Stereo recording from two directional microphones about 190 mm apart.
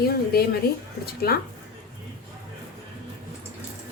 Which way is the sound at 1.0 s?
55° left (ahead or behind).